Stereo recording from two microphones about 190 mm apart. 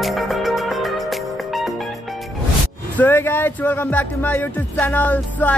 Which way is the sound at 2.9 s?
10° left (ahead or behind).